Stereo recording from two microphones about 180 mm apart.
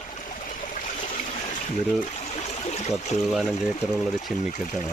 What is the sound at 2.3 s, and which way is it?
Trickle, 35° left (ahead or behind).